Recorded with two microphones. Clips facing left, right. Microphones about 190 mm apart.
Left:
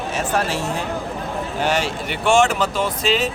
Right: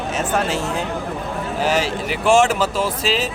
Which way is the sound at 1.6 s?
5° right (ahead or behind).